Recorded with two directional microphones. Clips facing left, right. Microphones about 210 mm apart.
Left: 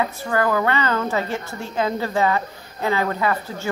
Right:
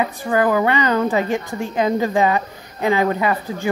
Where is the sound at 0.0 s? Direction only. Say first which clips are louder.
Right 3 dB; 15° right (ahead or behind).